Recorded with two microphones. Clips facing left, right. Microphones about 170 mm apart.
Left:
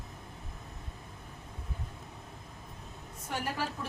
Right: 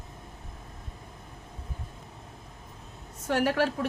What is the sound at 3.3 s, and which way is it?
Speech, 80° right.